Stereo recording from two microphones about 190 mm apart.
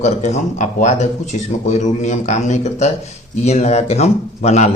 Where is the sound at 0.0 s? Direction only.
40° left (ahead or behind).